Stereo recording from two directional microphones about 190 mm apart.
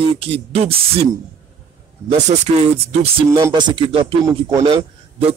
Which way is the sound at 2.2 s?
35° right (ahead or behind).